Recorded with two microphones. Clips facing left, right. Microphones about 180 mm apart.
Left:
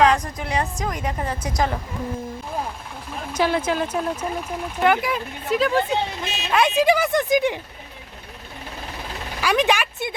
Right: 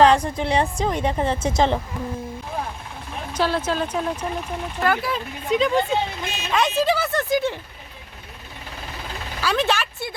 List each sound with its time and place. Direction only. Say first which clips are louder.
0.0 s a woman's voice: right 3 dB; 30° right (ahead or behind)
3.2 s speech: left 1 dB; 10° left (ahead or behind)
4.8 s speech: left 3 dB; 15° left (ahead or behind)
5.5 s speech: right 1 dB; 5° left (ahead or behind)
6.2 s speech: even; 45° right (ahead or behind)
6.5 s speech: left 2 dB; 10° left (ahead or behind)
9.4 s speech: left 2 dB; 15° left (ahead or behind)